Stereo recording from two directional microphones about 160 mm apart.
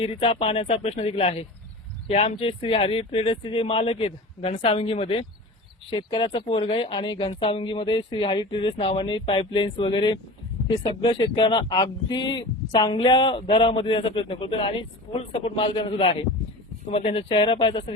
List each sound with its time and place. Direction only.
0.0 s speech: 40° left (ahead or behind)